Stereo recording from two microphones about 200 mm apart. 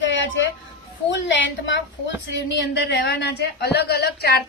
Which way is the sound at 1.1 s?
65° left (ahead or behind).